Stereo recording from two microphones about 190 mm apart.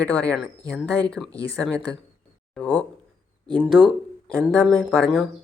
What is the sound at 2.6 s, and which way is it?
Speech, 5° left (ahead or behind).